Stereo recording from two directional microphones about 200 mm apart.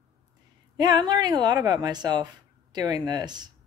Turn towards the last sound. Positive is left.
turn(degrees=-20)  # may be behind; listen again after turning